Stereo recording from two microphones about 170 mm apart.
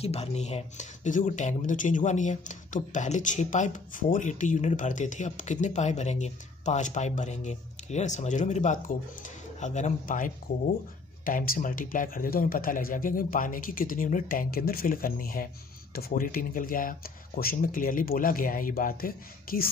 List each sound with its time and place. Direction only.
0.0 s speech: 40° left (ahead or behind); by 19.7 s 60° left (ahead or behind)